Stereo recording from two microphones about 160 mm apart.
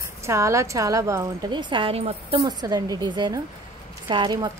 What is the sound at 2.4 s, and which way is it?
Speech, 25° right (ahead or behind).